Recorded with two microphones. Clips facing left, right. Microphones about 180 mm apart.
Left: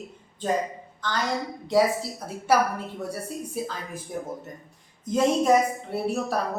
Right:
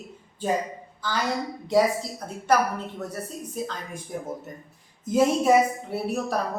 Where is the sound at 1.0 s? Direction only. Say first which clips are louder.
Even; 10° right (ahead or behind).